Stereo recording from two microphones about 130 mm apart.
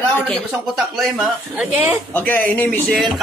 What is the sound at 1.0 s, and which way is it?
Speech, 5° right (ahead or behind).